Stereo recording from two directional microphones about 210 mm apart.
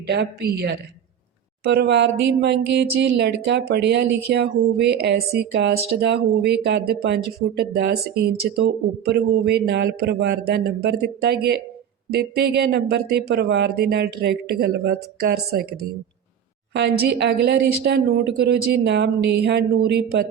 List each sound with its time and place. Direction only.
0.1 s a man's voice: 50° right (ahead or behind)